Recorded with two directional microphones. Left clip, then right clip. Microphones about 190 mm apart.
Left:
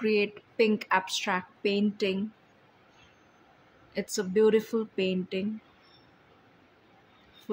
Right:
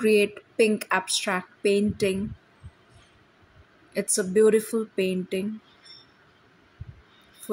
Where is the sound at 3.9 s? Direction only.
20° right (ahead or behind).